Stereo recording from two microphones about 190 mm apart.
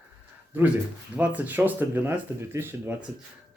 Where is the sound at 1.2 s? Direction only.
10° right (ahead or behind).